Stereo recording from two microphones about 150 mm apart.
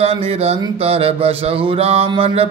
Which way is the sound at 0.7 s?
40° right (ahead or behind).